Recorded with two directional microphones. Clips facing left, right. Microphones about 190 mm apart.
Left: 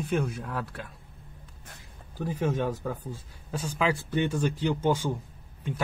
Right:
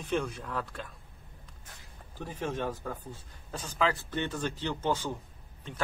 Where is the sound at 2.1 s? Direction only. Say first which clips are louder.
Left 6 dB; 10° left (ahead or behind).